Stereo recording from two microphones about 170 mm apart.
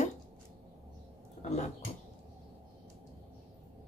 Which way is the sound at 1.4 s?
45° left (ahead or behind).